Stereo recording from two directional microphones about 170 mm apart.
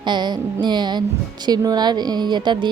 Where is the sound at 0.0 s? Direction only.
25° right (ahead or behind).